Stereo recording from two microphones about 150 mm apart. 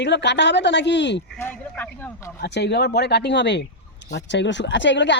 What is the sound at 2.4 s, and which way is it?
Speech, 90° left.